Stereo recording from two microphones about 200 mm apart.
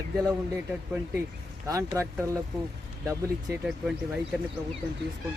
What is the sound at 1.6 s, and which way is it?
Speech, 15° right (ahead or behind).